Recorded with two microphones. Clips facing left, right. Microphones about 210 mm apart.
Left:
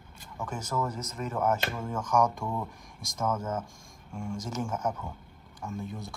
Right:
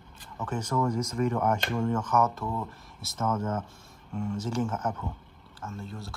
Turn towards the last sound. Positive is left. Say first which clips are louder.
# left 2 dB
turn(degrees=15)  # may be behind; listen again after turning